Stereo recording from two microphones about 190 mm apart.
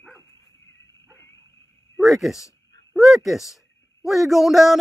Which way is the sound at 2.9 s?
Centre (ahead or behind).